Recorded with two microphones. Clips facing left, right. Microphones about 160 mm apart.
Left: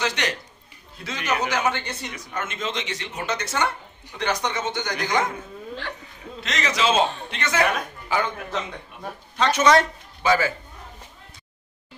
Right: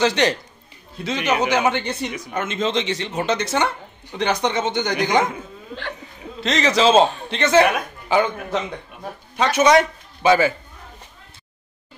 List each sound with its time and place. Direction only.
0.0 s a man's voice: 30° right (ahead or behind)
6.4 s a man's voice: 30° right (ahead or behind)
7.7 s speech: 20° right (ahead or behind)